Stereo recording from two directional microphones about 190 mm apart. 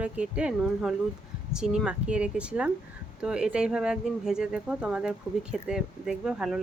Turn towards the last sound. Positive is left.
turn(degrees=-5)  # may be behind; listen again after turning